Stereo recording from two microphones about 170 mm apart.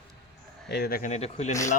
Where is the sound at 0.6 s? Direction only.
70° left (ahead or behind).